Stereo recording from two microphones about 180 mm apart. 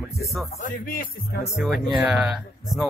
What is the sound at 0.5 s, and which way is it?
Music, 50° left (ahead or behind).